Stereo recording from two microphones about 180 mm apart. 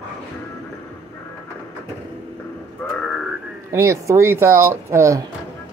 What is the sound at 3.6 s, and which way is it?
Speech, 15° right (ahead or behind).